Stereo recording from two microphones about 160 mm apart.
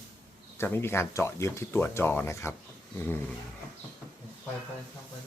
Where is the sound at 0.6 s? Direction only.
15° left (ahead or behind).